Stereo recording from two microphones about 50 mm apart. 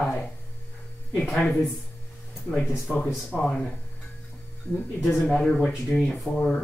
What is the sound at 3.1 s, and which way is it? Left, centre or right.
Speech, centre.